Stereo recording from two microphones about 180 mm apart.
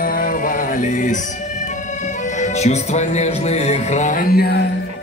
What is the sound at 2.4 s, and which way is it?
Music, 40° left (ahead or behind).